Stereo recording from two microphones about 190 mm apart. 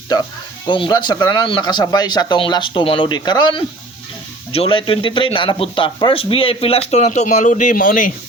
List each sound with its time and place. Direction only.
0.7 s speech: 25° left (ahead or behind); by 8.1 s 45° left (ahead or behind)